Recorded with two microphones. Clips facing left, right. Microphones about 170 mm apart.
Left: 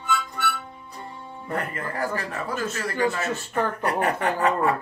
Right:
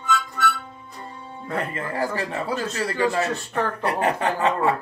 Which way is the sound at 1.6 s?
25° right (ahead or behind).